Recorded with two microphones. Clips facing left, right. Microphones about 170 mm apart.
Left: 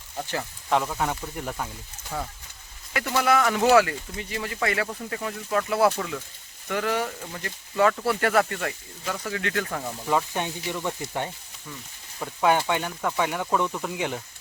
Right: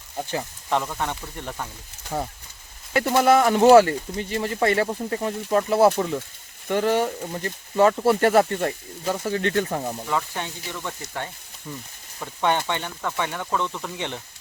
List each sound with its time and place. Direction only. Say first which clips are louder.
0.2 s speech: right 2 dB; 15° right (ahead or behind)
0.7 s speech: left 1 dB; 5° left (ahead or behind)
2.1 s speech: right 4 dB; 25° right (ahead or behind)
10.1 s speech: left 6 dB; 15° left (ahead or behind)